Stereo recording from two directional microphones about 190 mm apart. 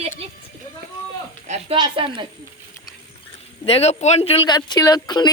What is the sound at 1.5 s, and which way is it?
Speech, 25° right (ahead or behind).